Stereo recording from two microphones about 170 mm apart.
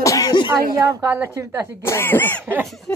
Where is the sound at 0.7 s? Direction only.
20° right (ahead or behind).